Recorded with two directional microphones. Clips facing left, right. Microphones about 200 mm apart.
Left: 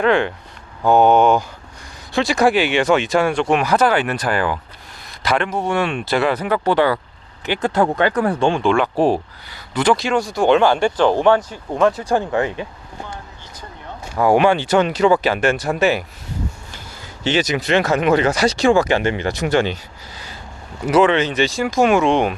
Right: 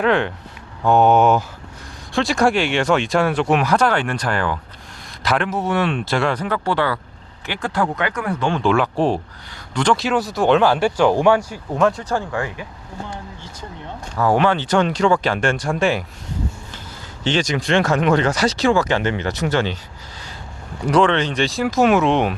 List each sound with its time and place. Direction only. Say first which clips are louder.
0.0 s speech: left 2 dB; centre (ahead or behind); by 8.5 s 30° left (ahead or behind)
8.6 s speech: right 1 dB; centre (ahead or behind)
12.0 s speech: left 5 dB; 20° left (ahead or behind)
14.2 s speech: left 3 dB; 15° left (ahead or behind)
17.2 s speech: left 1 dB; 5° left (ahead or behind)
20.8 s speech: left 2 dB; 5° left (ahead or behind)